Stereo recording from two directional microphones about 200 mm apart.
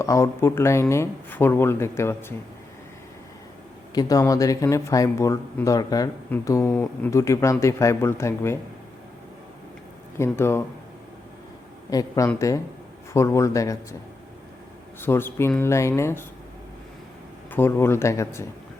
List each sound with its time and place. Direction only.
0.0 s speech: 15° left (ahead or behind)
3.9 s speech: 15° left (ahead or behind)
10.2 s speech: 10° left (ahead or behind)
11.9 s speech: 15° left (ahead or behind)
15.0 s speech: 10° left (ahead or behind)
17.5 s speech: 10° left (ahead or behind)